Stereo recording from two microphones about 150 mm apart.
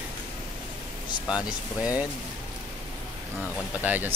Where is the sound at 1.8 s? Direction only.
10° right (ahead or behind).